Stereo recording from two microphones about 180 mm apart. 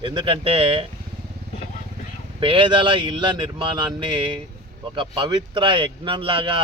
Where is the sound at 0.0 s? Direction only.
25° right (ahead or behind).